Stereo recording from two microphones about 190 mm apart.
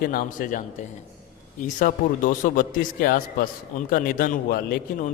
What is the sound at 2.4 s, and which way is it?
Speech, 45° left (ahead or behind).